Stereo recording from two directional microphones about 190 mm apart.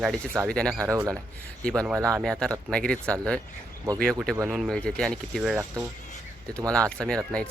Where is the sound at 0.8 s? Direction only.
15° right (ahead or behind).